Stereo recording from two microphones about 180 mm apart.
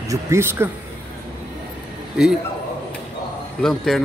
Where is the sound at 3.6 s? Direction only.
Centre (ahead or behind).